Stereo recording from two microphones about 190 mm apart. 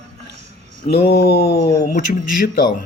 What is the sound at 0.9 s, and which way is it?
Speech, 35° left (ahead or behind).